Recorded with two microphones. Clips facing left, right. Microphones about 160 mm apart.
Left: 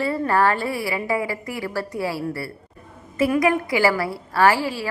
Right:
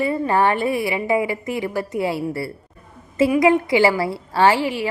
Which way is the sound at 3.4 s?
25° right (ahead or behind).